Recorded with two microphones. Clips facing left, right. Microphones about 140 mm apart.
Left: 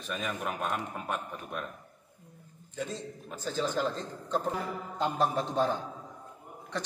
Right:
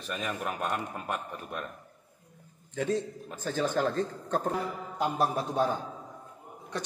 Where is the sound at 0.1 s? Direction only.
Centre (ahead or behind).